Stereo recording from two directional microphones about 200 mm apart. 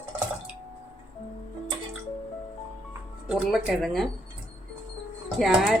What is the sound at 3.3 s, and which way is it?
Speech, centre (ahead or behind).